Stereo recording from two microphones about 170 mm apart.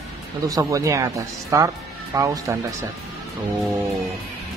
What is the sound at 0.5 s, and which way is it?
Speech, 20° right (ahead or behind).